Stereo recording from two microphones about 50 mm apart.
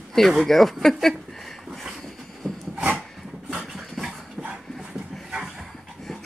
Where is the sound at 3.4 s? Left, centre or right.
Centre.